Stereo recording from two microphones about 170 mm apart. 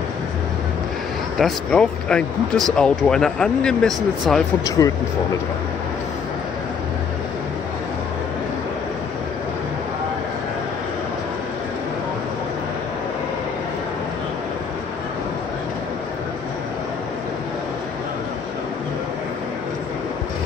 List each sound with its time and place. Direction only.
1.4 s speech: 5° left (ahead or behind)
4.6 s speech: 20° left (ahead or behind)